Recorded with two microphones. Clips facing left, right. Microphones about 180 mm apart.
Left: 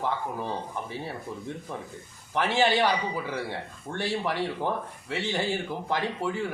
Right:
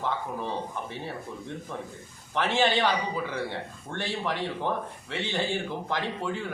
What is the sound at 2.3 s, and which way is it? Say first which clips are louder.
Speech: left 1 dB; 10° left (ahead or behind).